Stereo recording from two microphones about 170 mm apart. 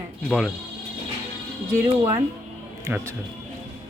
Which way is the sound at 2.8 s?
15° right (ahead or behind).